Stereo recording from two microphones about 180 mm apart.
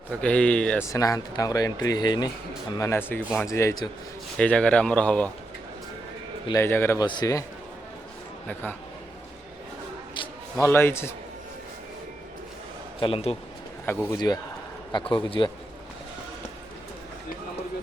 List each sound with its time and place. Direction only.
0.1 s speech: 5° left (ahead or behind)
0.9 s speech: 20° left (ahead or behind)
4.4 s speech: 5° left (ahead or behind)
6.5 s speech: 15° left (ahead or behind)
10.6 s speech: 15° left (ahead or behind)
13.0 s a man's voice: 30° left (ahead or behind)
13.8 s speech: 10° left (ahead or behind)
14.9 s speech: 30° left (ahead or behind)